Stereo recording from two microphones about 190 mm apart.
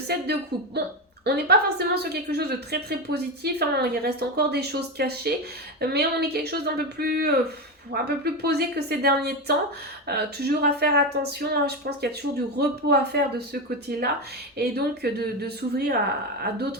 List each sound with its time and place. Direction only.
0.1 s a woman's voice: 60° right (ahead or behind)